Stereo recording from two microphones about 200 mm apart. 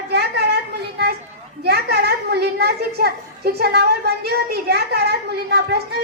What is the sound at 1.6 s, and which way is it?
A child's voice, 55° right (ahead or behind).